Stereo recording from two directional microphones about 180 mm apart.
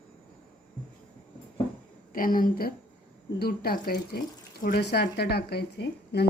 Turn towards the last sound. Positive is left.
turn(degrees=65)  # may be behind; listen again after turning